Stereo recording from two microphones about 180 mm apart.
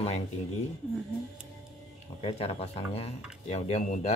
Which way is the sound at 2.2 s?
30° left (ahead or behind).